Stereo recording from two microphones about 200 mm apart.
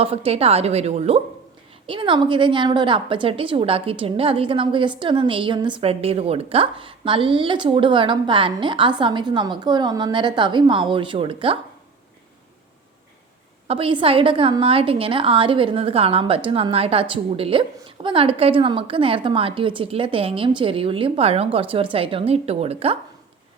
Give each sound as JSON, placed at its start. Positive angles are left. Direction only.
{"t": 0.0, "sound": "a woman's voice", "side_deg": -30}
{"t": 13.7, "sound": "a woman's voice", "side_deg": -25}